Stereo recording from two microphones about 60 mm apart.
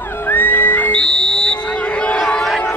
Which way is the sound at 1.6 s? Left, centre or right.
Centre.